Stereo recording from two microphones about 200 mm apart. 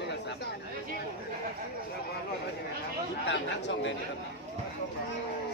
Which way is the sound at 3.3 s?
65° left (ahead or behind).